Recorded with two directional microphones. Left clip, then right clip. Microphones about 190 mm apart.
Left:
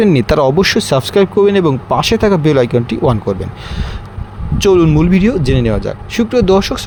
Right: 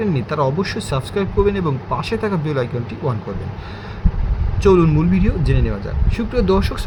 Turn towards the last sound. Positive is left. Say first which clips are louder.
# left 7 dB
turn(degrees=35)  # may be behind; listen again after turning